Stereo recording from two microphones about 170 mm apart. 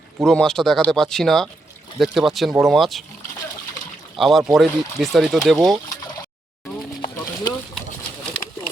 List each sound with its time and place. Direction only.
0.3 s speech: 5° left (ahead or behind)
4.2 s speech: centre (ahead or behind)
7.0 s a sound: 25° left (ahead or behind)